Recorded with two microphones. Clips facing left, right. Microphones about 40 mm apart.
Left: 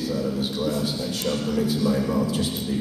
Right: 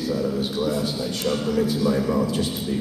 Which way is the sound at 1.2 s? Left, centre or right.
Centre.